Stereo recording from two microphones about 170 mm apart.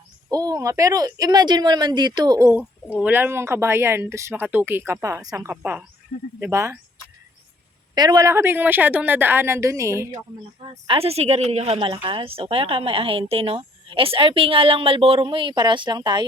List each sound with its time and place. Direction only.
0.3 s speech: 20° right (ahead or behind)
2.9 s speech: 10° right (ahead or behind)
7.9 s speech: 25° right (ahead or behind)
10.8 s a woman's voice: 35° right (ahead or behind)